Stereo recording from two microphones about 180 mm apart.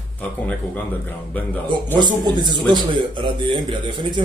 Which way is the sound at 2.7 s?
25° right (ahead or behind).